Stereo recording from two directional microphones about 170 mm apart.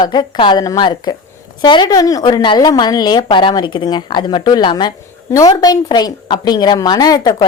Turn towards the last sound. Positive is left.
turn(degrees=20)  # may be behind; listen again after turning